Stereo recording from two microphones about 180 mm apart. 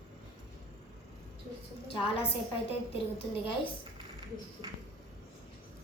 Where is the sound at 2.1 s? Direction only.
30° left (ahead or behind).